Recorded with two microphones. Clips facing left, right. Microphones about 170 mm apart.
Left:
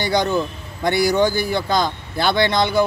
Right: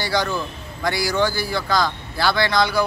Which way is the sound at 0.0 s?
20° left (ahead or behind).